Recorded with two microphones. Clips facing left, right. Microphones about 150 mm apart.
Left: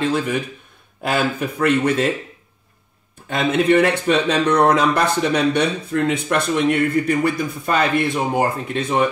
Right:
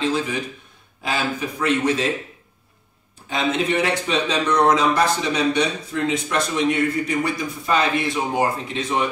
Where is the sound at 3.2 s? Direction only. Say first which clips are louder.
Left 5 dB; 55° left (ahead or behind).